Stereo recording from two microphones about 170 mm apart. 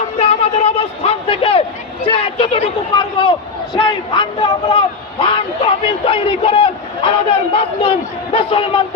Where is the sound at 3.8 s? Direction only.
30° left (ahead or behind).